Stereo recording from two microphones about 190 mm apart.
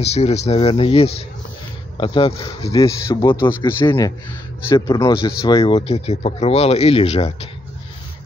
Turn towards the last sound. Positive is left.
turn(degrees=30)  # may be behind; listen again after turning